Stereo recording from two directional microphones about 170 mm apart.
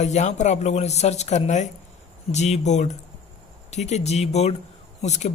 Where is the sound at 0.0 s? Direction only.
40° left (ahead or behind).